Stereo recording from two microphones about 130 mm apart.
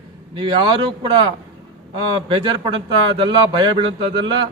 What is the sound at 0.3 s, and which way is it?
Speech, 40° right (ahead or behind).